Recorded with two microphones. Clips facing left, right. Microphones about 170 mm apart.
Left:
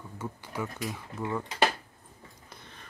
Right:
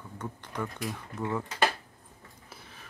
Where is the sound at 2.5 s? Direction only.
5° right (ahead or behind).